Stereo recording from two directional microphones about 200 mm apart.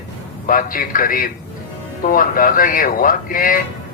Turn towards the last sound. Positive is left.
turn(degrees=45)  # may be behind; listen again after turning